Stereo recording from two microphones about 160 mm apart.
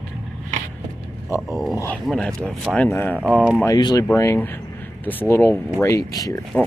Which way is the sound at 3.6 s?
20° left (ahead or behind).